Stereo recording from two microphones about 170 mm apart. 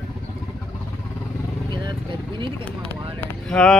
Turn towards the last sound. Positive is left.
turn(degrees=5)  # may be behind; listen again after turning